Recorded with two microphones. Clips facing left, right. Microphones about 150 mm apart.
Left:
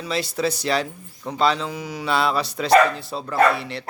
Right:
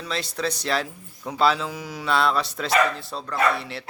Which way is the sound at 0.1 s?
5° left (ahead or behind).